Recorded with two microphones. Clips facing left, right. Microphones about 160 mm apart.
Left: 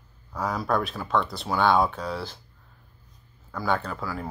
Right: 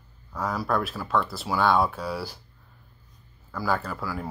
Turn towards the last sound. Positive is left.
turn(degrees=-5)  # may be behind; listen again after turning